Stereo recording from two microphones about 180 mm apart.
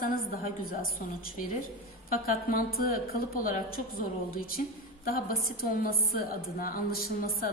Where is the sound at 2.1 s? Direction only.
55° left (ahead or behind).